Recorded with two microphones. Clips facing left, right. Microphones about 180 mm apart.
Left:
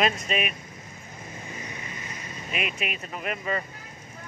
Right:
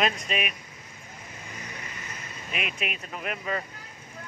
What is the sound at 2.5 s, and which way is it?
Speech, centre (ahead or behind).